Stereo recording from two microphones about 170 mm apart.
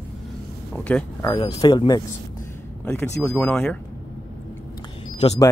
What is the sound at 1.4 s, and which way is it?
Speech, 30° left (ahead or behind).